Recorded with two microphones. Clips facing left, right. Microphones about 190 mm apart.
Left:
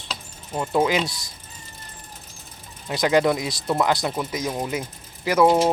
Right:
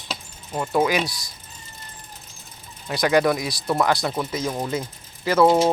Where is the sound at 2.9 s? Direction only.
20° left (ahead or behind).